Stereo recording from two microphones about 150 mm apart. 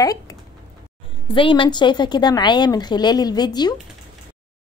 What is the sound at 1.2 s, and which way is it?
A woman's voice, 35° left (ahead or behind).